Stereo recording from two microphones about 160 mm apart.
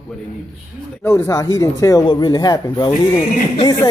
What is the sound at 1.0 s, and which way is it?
Speech, 15° left (ahead or behind).